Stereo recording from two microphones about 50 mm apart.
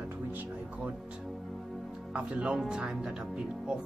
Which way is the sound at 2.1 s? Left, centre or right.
Right.